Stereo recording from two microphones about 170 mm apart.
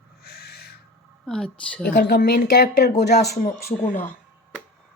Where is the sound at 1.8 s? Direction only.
60° left (ahead or behind).